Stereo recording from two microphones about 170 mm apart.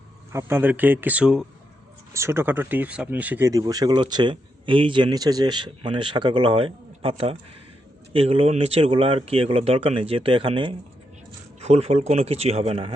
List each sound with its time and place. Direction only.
0.3 s speech: 15° right (ahead or behind)
2.1 s speech: 15° right (ahead or behind); by 12.9 s 35° right (ahead or behind)